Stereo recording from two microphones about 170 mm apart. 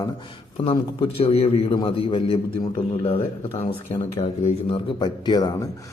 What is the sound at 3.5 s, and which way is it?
Speech, 40° left (ahead or behind).